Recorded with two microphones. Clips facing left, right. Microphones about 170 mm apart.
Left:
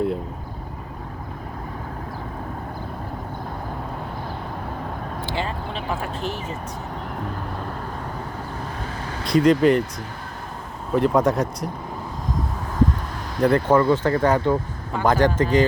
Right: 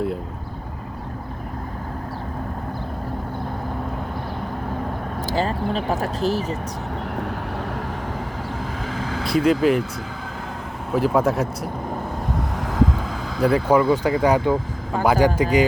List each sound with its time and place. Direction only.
5.2 s speech: 40° right (ahead or behind)
9.2 s speech: 5° right (ahead or behind)
10.9 s speech: 5° right (ahead or behind)
12.5 s vehicle: 90° right
13.4 s speech: 10° right (ahead or behind)